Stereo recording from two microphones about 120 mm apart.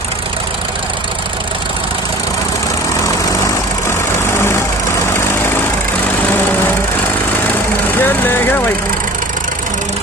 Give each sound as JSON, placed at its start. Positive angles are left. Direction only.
{"t": 8.0, "sound": "vehicle", "side_deg": 20}